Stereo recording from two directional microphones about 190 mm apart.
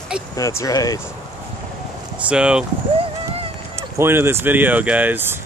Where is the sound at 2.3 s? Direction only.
5° right (ahead or behind).